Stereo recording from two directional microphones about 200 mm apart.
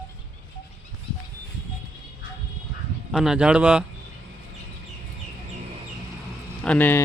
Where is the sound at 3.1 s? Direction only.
Centre (ahead or behind).